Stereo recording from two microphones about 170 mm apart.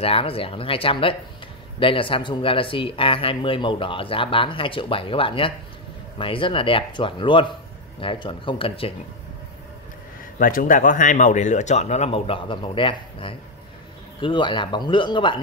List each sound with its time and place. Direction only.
0.0 s speech: 35° left (ahead or behind)
10.4 s speech: 50° left (ahead or behind); by 15.4 s 30° left (ahead or behind)